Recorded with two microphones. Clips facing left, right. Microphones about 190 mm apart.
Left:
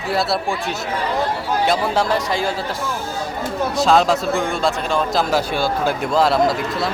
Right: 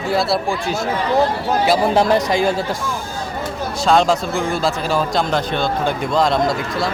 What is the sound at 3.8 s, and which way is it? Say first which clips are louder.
Speech: right 1 dB; centre (ahead or behind).